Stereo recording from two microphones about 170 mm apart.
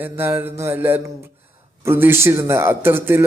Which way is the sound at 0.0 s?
10° right (ahead or behind).